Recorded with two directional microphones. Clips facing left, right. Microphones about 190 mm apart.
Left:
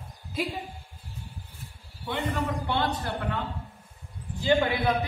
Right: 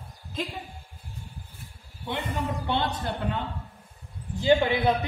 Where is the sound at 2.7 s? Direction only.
20° right (ahead or behind).